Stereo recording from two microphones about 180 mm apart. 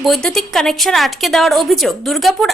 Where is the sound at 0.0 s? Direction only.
Centre (ahead or behind).